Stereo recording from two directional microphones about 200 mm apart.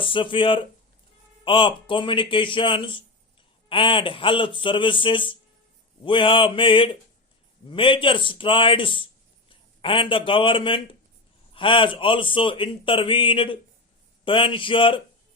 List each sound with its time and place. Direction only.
0.0 s a man's voice: 25° left (ahead or behind)